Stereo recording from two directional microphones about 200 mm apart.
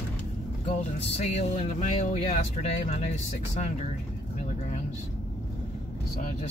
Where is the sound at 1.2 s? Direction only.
35° left (ahead or behind).